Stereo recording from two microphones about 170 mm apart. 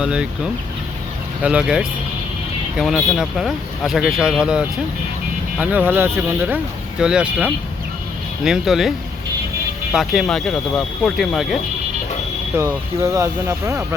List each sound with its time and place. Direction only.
0.0 s speech: 5° right (ahead or behind)
9.9 s speech: centre (ahead or behind)
12.5 s speech: 15° right (ahead or behind)